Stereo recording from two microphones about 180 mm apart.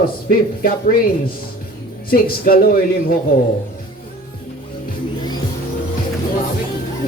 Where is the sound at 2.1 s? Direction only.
55° left (ahead or behind).